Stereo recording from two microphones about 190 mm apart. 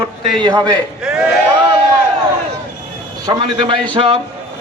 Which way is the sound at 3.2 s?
25° right (ahead or behind).